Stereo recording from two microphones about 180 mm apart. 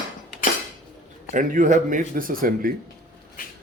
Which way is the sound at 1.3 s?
45° right (ahead or behind).